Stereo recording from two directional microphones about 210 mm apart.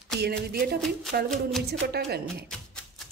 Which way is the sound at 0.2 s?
50° right (ahead or behind).